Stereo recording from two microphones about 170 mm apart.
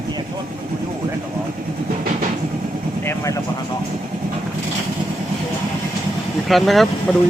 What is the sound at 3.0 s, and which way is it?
Vehicle, 20° left (ahead or behind).